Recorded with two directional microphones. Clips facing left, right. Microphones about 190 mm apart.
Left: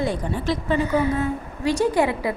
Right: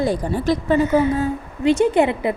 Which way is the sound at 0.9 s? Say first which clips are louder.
Right 4 dB; 25° right (ahead or behind).